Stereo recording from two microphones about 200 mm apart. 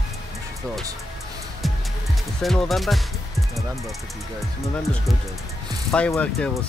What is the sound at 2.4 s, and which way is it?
Speech, centre (ahead or behind).